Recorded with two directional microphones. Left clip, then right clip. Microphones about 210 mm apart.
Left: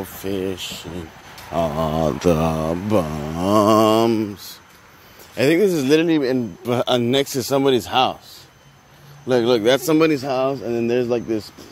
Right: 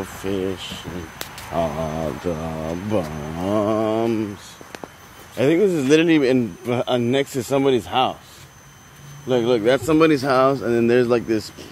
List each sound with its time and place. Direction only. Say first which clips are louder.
0.0 s speech: even; 25° left (ahead or behind)
5.4 s speech: left 1 dB; 25° left (ahead or behind)
5.9 s speech: right 1 dB; 10° left (ahead or behind)
6.6 s speech: left 2 dB; 30° left (ahead or behind)
9.3 s speech: left 1 dB; 30° left (ahead or behind); by 11.5 s 5° left (ahead or behind)